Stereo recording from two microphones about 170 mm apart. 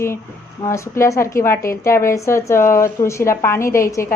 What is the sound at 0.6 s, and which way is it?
A woman's voice, 15° left (ahead or behind).